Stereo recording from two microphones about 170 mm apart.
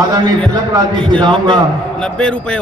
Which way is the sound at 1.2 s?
30° right (ahead or behind).